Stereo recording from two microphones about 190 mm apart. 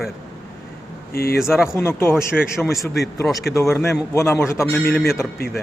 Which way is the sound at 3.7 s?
15° left (ahead or behind).